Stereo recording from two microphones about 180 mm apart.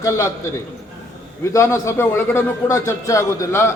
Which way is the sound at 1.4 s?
15° left (ahead or behind).